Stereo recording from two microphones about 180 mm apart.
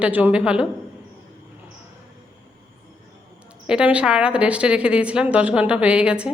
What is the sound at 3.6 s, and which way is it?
A woman's voice, 5° right (ahead or behind).